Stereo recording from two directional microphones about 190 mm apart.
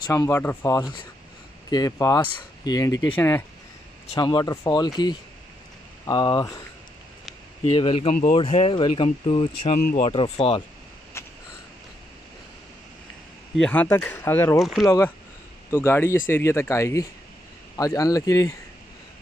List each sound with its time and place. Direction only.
0.0 s speech: 15° left (ahead or behind)
2.9 s speech: 90° left
3.2 s speech: 10° left (ahead or behind)
4.1 s speech: 20° left (ahead or behind)
7.6 s speech: 30° left (ahead or behind)
8.1 s speech: 45° left (ahead or behind)
8.4 s speech: 30° left (ahead or behind)
9.8 s speech: 50° left (ahead or behind)
10.0 s speech: 30° left (ahead or behind)
11.2 s a sound: 15° left (ahead or behind)
13.6 s speech: 5° left (ahead or behind)
14.6 s speech: centre (ahead or behind)
15.7 s speech: 10° left (ahead or behind)